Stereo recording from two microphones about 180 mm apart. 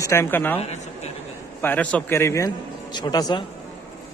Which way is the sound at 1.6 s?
10° left (ahead or behind).